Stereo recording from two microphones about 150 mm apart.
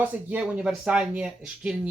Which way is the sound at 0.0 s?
10° right (ahead or behind).